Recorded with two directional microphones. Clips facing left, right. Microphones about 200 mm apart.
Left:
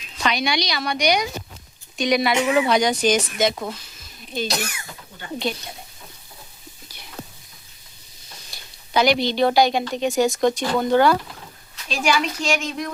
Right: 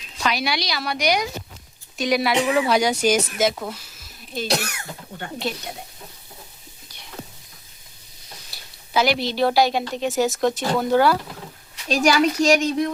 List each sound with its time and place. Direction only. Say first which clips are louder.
0.2 s speech: left 1 dB; 5° right (ahead or behind)
3.5 s a sound: left 1 dB; 5° right (ahead or behind)
4.7 s speech: right 4 dB; 65° right (ahead or behind)
8.4 s speech: left 1 dB; 5° right (ahead or behind)
11.9 s speech: right 4 dB; 40° right (ahead or behind)